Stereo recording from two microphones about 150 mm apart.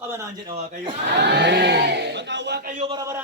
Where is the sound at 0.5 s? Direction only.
60° right (ahead or behind); by 2.7 s 85° right.